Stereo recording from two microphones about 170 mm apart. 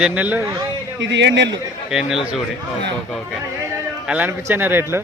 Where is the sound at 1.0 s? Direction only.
90° right.